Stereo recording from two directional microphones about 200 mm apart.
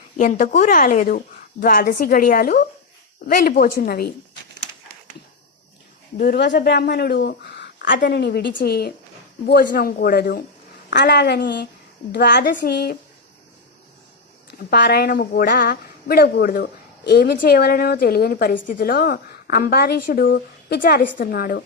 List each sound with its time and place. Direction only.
0.2 s a woman's voice: 40° left (ahead or behind)
6.1 s speech: 50° left (ahead or behind)
7.9 s a woman's voice: 50° left (ahead or behind)
14.7 s a woman's voice: 55° left (ahead or behind)